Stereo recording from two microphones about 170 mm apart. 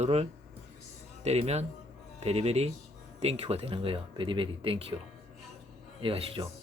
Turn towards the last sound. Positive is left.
turn(degrees=-35)  # may be behind; listen again after turning